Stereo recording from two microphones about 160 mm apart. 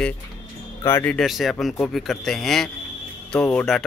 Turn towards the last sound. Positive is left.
turn(degrees=5)  # may be behind; listen again after turning